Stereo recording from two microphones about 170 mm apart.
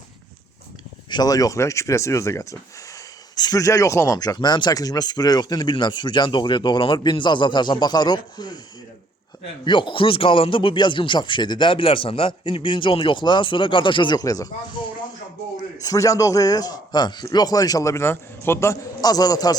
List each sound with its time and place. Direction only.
1.1 s speech: 20° left (ahead or behind)
9.6 s speech: 30° left (ahead or behind)